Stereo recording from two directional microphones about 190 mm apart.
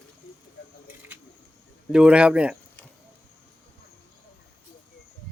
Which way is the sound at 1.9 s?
5° right (ahead or behind).